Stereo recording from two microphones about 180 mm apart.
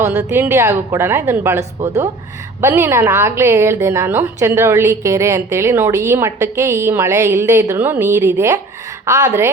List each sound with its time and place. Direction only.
0.2 s a woman's voice: 15° right (ahead or behind)